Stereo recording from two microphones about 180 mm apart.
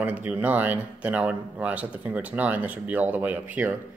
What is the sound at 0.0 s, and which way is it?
Speech, 10° right (ahead or behind).